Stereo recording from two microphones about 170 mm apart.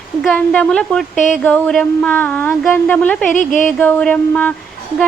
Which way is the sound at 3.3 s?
50° left (ahead or behind).